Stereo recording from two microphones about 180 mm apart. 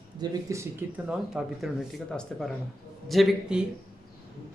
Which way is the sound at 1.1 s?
5° right (ahead or behind).